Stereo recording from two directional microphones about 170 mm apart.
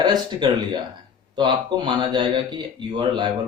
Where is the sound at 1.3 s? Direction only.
25° right (ahead or behind).